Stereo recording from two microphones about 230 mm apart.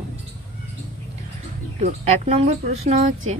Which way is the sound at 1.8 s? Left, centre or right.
Right.